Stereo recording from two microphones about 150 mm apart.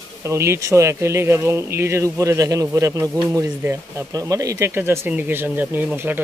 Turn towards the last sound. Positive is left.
turn(degrees=-15)  # may be behind; listen again after turning